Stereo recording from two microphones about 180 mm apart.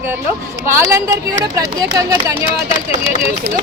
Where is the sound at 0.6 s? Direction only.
15° right (ahead or behind).